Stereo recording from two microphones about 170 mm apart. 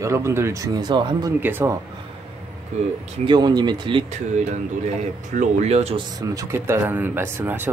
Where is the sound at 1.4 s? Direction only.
10° right (ahead or behind).